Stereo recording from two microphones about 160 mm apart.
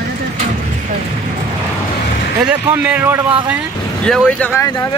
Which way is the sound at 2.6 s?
10° right (ahead or behind).